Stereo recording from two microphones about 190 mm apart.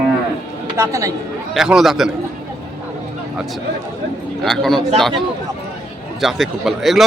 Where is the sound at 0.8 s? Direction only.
15° right (ahead or behind).